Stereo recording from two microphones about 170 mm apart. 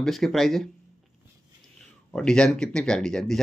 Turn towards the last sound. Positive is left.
turn(degrees=5)  # may be behind; listen again after turning